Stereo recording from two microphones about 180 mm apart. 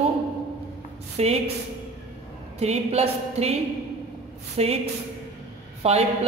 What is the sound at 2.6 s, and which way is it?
A woman's voice, 35° right (ahead or behind).